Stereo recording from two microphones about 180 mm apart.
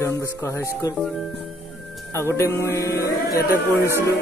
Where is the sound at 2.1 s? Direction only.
15° left (ahead or behind).